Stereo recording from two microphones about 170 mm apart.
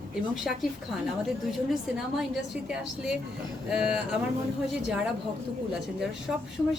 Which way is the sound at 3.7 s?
5° right (ahead or behind).